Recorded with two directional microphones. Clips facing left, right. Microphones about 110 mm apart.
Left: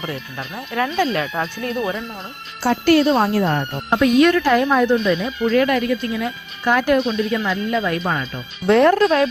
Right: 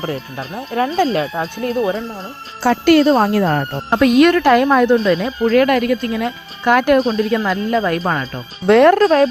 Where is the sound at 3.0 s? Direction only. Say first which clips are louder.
Right 3 dB; 40° right (ahead or behind).